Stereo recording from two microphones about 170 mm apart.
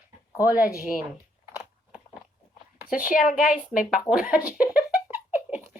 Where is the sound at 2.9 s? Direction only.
50° left (ahead or behind).